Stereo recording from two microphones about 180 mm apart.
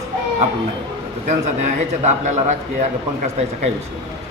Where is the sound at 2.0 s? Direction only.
40° right (ahead or behind).